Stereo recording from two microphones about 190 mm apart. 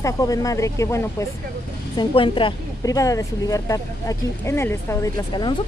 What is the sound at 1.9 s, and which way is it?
Speech, 25° left (ahead or behind).